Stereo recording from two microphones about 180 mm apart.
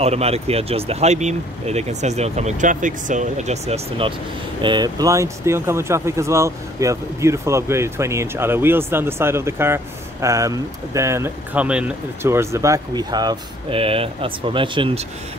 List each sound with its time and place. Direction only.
0.0 s speech: 35° right (ahead or behind)
4.6 s speech: 25° right (ahead or behind)